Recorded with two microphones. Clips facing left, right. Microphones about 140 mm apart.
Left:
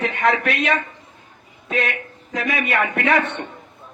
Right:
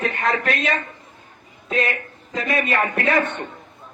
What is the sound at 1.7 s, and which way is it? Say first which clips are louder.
A man's voice: right 1 dB; 75° left (ahead or behind).